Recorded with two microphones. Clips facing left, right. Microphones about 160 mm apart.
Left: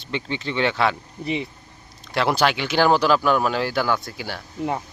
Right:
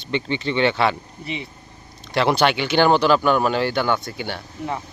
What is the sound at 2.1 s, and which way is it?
Speech, centre (ahead or behind).